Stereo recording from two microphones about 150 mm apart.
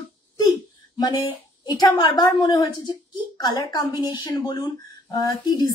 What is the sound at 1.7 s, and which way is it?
Speech, 25° left (ahead or behind).